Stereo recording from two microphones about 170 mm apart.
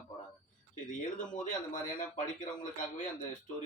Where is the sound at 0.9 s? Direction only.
50° left (ahead or behind).